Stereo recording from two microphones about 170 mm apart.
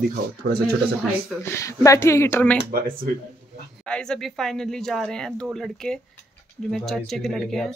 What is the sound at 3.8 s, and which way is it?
Speech, 5° left (ahead or behind).